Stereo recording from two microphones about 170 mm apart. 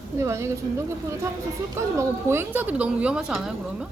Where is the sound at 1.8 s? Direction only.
15° right (ahead or behind).